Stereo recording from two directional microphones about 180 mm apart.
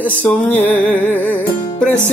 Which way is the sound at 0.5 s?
40° left (ahead or behind).